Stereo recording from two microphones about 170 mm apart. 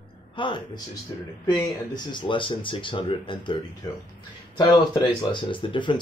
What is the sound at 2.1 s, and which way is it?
Speech, 30° left (ahead or behind).